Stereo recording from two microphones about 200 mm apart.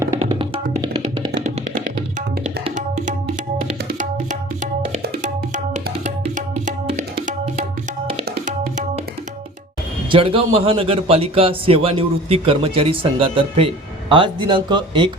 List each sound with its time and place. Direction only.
0.3 s music: 25° right (ahead or behind)
1.8 s music: 45° right (ahead or behind)
3.9 s music: 40° right (ahead or behind)
10.1 s a man's voice: 25° right (ahead or behind)